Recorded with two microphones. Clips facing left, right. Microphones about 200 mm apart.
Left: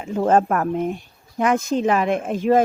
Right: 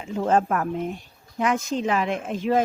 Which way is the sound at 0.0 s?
50° left (ahead or behind).